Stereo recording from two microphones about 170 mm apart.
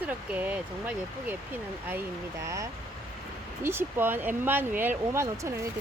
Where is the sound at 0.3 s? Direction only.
10° right (ahead or behind).